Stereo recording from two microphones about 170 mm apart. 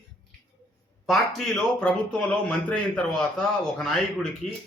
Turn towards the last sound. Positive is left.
turn(degrees=45)  # may be behind; listen again after turning